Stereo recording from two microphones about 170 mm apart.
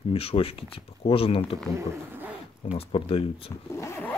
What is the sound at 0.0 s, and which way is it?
Speech, 35° left (ahead or behind).